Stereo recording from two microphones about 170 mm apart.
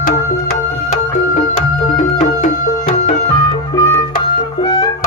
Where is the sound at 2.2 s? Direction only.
50° left (ahead or behind).